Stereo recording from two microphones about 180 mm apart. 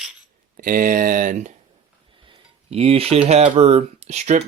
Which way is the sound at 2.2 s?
30° right (ahead or behind).